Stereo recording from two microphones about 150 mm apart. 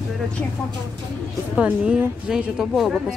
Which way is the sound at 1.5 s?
10° right (ahead or behind).